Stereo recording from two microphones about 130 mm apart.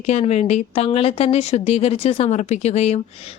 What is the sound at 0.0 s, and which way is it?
A woman's voice, 55° left (ahead or behind).